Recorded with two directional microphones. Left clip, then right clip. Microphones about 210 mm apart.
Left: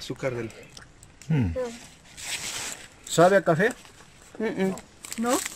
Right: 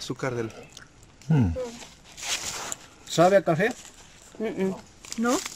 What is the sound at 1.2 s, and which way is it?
Speech, 15° right (ahead or behind).